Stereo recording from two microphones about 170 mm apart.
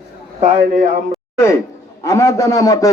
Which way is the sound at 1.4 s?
15° left (ahead or behind).